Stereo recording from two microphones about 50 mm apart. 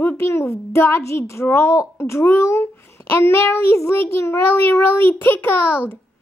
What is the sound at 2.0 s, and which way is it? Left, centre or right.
A child's voice, left.